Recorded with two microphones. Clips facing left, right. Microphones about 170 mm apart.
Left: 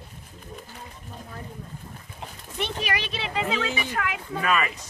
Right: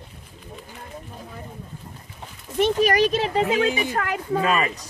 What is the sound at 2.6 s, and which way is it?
A child's voice, 40° right (ahead or behind).